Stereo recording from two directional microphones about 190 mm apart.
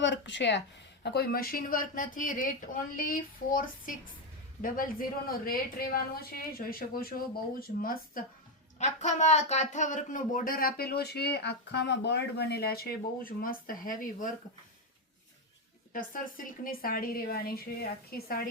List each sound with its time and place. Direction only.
0.0 s a sound: 70° left (ahead or behind)
1.0 s speech: 55° left (ahead or behind)
8.8 s speech: 40° left (ahead or behind)
15.9 s speech: 45° left (ahead or behind)